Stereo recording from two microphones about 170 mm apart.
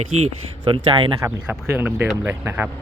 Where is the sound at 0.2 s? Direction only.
30° right (ahead or behind).